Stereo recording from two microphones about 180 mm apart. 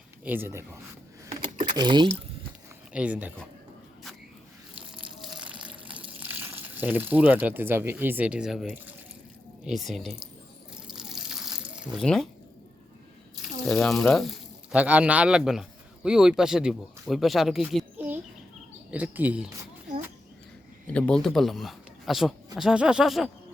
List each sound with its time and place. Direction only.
0.3 s speech: 10° right (ahead or behind)
1.3 s keys jangling: 45° right (ahead or behind)
1.7 s speech: 25° right (ahead or behind)
2.9 s speech: 5° right (ahead or behind)
5.2 s water: 5° right (ahead or behind)
9.6 s speech: centre (ahead or behind)
10.8 s water: centre (ahead or behind)
13.3 s speech: 5° left (ahead or behind)
20.8 s speech: 5° left (ahead or behind)